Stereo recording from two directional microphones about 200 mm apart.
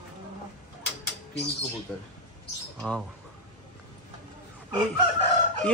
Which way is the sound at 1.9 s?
5° left (ahead or behind).